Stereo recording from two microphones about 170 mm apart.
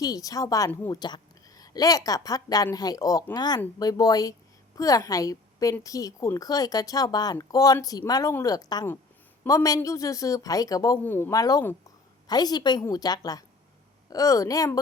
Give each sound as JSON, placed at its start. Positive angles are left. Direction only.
{"t": 0.0, "sound": "a woman's voice", "side_deg": 20}